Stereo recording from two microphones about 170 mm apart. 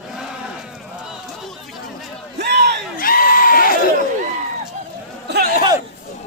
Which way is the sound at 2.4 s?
85° right.